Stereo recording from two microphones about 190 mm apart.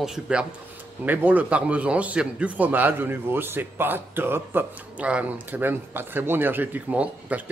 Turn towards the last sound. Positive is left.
turn(degrees=-5)  # may be behind; listen again after turning